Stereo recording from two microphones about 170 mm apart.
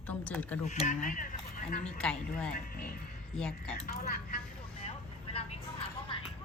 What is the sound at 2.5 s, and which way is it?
Speech, 60° left (ahead or behind).